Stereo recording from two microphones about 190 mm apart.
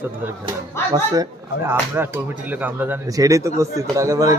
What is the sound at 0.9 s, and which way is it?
Speech, 20° right (ahead or behind).